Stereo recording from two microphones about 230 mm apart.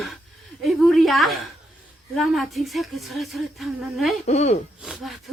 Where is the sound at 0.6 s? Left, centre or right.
Centre.